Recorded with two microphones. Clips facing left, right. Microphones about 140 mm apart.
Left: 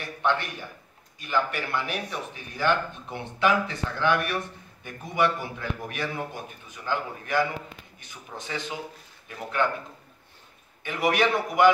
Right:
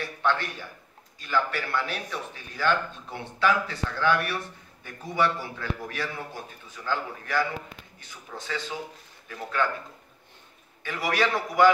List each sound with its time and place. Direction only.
0.0 s a man's voice: 20° left (ahead or behind)
10.8 s a man's voice: 20° left (ahead or behind)